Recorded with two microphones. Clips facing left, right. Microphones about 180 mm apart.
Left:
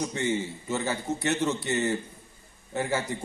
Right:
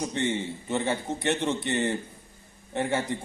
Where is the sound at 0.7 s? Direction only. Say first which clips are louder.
Right 2 dB; 25° right (ahead or behind).